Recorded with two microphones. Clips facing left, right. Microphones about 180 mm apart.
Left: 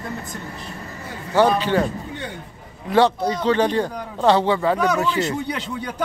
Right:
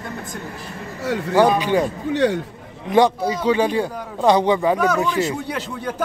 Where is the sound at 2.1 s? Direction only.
90° right.